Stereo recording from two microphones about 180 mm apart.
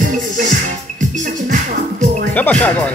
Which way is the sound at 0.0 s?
50° right (ahead or behind).